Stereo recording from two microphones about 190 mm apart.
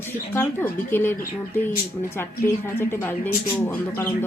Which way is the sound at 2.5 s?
10° left (ahead or behind).